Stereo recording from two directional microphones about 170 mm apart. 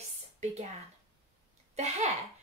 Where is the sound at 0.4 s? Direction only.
40° right (ahead or behind).